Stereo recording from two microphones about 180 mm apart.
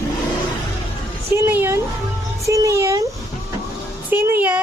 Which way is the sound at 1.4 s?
10° right (ahead or behind).